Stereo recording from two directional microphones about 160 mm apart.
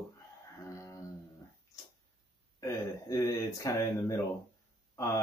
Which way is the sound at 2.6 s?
20° left (ahead or behind).